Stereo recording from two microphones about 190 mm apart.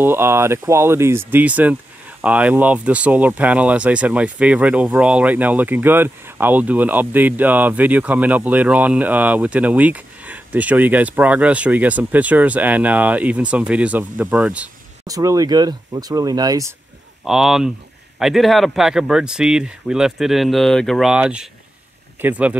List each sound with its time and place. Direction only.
0.0 s speech: 10° right (ahead or behind)
15.0 s speech: 20° right (ahead or behind)
17.2 s speech: 5° right (ahead or behind)